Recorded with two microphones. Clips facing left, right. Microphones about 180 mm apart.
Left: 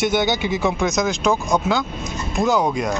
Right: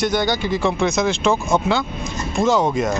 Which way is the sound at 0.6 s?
Centre (ahead or behind).